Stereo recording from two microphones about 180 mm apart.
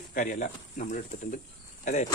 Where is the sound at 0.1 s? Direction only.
45° left (ahead or behind).